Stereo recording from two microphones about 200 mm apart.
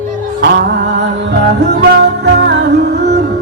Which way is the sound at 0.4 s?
55° right (ahead or behind).